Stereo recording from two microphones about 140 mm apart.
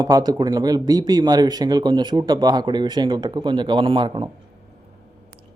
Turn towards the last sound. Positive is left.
turn(degrees=-35)  # may be behind; listen again after turning